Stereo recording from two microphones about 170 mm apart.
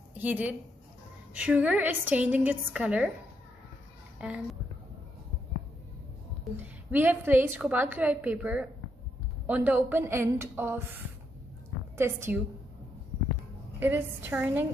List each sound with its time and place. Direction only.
0.1 s a woman's voice: 10° right (ahead or behind)
4.2 s a woman's voice: 5° right (ahead or behind)
6.5 s a woman's voice: 10° right (ahead or behind)
12.0 s a woman's voice: 15° right (ahead or behind)
13.7 s a woman's voice: 10° right (ahead or behind)